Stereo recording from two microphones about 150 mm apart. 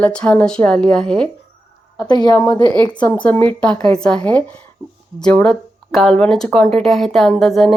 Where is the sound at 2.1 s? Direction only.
25° left (ahead or behind).